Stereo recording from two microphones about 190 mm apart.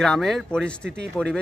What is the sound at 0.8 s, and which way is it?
Speech, 65° right (ahead or behind).